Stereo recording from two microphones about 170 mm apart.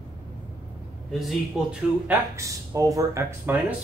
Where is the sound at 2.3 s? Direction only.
20° right (ahead or behind).